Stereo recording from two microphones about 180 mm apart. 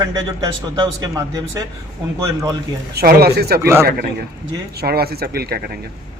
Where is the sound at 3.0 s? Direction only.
60° right (ahead or behind).